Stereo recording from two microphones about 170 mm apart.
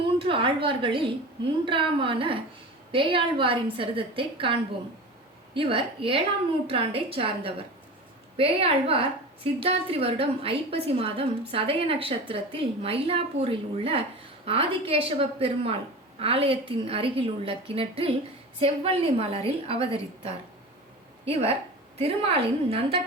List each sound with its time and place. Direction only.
0.0 s a sound: 30° right (ahead or behind)
1.6 s a woman's voice: 30° right (ahead or behind)
5.5 s a woman's voice: 30° right (ahead or behind)